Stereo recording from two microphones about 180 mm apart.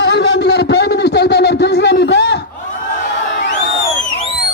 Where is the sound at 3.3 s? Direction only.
90° left.